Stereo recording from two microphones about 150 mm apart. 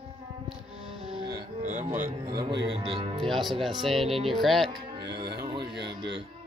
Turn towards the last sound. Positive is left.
turn(degrees=-35)  # may be behind; listen again after turning